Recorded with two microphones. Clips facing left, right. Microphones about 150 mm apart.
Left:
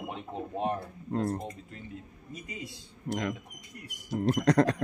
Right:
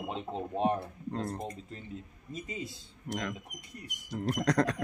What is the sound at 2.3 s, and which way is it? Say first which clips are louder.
Speech: right 3 dB; 25° right (ahead or behind).